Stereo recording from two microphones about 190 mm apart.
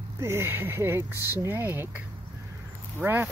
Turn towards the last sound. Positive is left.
turn(degrees=-10)  # may be behind; listen again after turning